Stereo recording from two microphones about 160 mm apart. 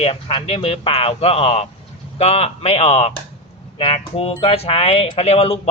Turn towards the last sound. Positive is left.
turn(degrees=40)  # may be behind; listen again after turning